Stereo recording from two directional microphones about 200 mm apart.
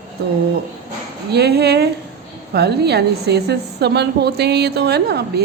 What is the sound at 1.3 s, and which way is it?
A woman's voice, 55° right (ahead or behind).